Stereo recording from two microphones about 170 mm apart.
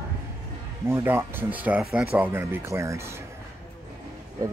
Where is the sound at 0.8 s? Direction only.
15° right (ahead or behind).